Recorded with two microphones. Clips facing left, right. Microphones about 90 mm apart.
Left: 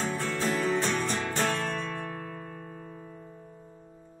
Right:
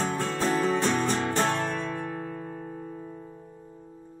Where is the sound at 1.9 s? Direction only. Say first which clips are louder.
Right 3 dB; 20° right (ahead or behind).